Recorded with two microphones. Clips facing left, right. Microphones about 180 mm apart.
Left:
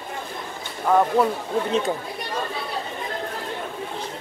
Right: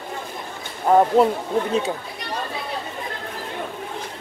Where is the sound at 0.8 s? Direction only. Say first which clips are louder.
Right 3 dB; 25° right (ahead or behind).